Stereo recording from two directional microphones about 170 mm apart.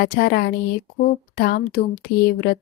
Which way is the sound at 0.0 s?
65° left (ahead or behind).